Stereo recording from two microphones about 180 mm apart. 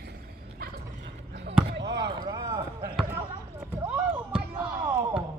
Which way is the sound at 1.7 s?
70° right (ahead or behind).